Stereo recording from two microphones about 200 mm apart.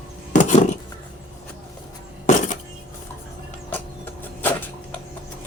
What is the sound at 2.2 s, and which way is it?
Music, 40° left (ahead or behind).